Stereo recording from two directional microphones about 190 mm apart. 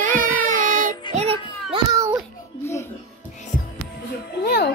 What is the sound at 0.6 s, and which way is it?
Child singing, 45° right (ahead or behind).